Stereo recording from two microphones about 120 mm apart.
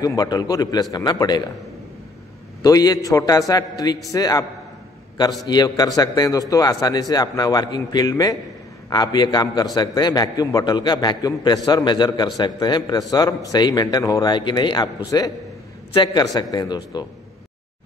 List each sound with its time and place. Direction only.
0.0 s a man's voice: 30° left (ahead or behind)
2.6 s a man's voice: 30° left (ahead or behind)
5.5 s a man's voice: 35° left (ahead or behind)